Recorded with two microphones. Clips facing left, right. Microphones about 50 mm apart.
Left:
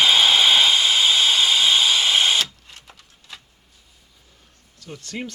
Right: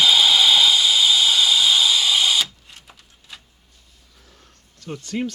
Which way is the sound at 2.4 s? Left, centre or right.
Centre.